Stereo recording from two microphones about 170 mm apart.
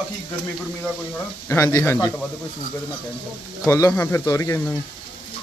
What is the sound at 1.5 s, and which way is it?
Speech, 15° left (ahead or behind).